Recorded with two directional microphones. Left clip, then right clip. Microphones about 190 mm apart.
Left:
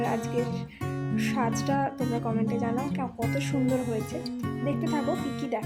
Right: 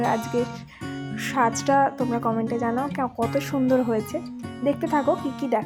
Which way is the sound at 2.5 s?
20° right (ahead or behind).